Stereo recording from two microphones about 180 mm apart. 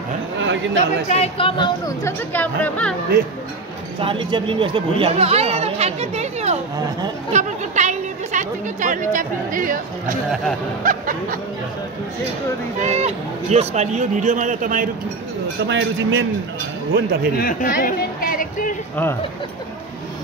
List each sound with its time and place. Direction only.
0.7 s speech: 40° left (ahead or behind)
1.9 s speech: 10° left (ahead or behind)
4.0 s speech: 30° right (ahead or behind); by 11.3 s 50° right (ahead or behind)
12.8 s speech: 40° right (ahead or behind)
15.6 s speech: 85° right
16.9 s speech: 60° right (ahead or behind)
17.4 s a sound: 50° left (ahead or behind)